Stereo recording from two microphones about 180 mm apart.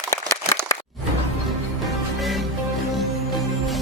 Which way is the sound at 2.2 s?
Centre (ahead or behind).